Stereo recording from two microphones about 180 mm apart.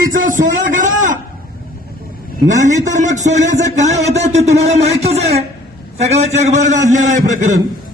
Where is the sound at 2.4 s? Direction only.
40° right (ahead or behind).